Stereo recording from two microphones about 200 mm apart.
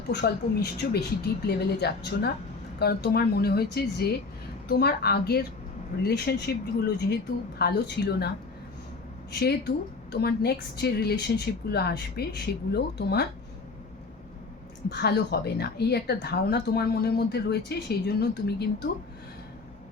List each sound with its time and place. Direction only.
0.1 s a woman's voice: 55° left (ahead or behind)
9.4 s a woman's voice: 55° left (ahead or behind)
14.8 s a woman's voice: 55° left (ahead or behind)